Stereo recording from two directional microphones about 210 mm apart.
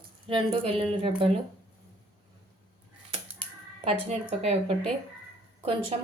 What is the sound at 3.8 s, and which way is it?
Speech, 30° right (ahead or behind).